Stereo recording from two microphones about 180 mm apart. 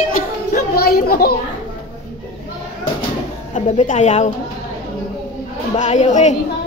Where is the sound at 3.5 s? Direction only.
40° left (ahead or behind).